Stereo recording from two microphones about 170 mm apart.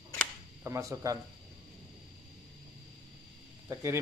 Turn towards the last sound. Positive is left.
turn(degrees=-15)  # may be behind; listen again after turning